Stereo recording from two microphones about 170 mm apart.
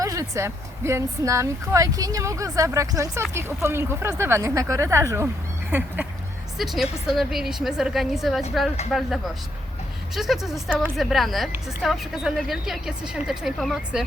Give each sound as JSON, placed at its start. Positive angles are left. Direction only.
{"t": 0.0, "sound": "speech", "side_deg": -20}
{"t": 6.6, "sound": "a woman's voice", "side_deg": 0}